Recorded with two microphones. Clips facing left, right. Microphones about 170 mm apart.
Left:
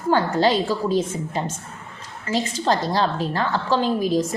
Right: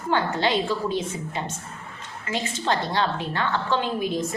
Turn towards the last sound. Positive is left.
turn(degrees=35)  # may be behind; listen again after turning